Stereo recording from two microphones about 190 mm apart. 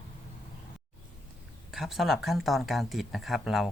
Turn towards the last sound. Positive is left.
turn(degrees=0)  # may be behind; listen again after turning